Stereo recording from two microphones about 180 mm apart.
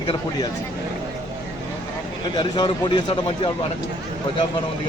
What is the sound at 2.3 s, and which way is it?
Speech, 25° left (ahead or behind).